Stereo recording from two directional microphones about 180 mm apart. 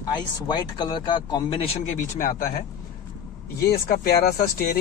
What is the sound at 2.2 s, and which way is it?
Speech, 50° left (ahead or behind).